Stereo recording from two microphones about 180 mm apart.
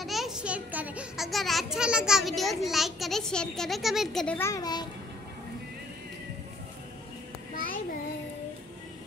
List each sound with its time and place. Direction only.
0.0 s a child's voice: centre (ahead or behind)
4.4 s a child's voice: 20° left (ahead or behind)